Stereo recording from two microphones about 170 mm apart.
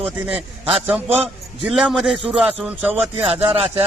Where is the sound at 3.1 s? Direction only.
35° right (ahead or behind).